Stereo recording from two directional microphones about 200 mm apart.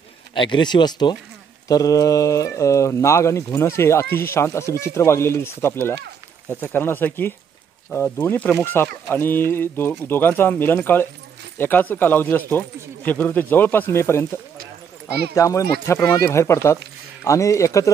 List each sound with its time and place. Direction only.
0.3 s speech: 25° left (ahead or behind)
14.6 s a sound: 55° right (ahead or behind)
15.3 s speech: 15° left (ahead or behind)